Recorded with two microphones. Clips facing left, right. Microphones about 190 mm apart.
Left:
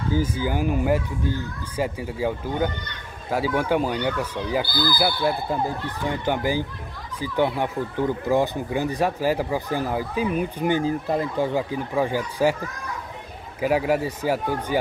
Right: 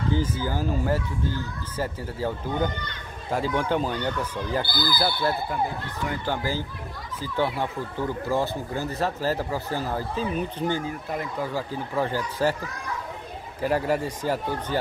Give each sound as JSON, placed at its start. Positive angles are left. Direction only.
{"t": 0.1, "sound": "speech", "side_deg": 10}
{"t": 10.8, "sound": "speech", "side_deg": 30}
{"t": 11.7, "sound": "speech", "side_deg": 15}
{"t": 13.6, "sound": "speech", "side_deg": 10}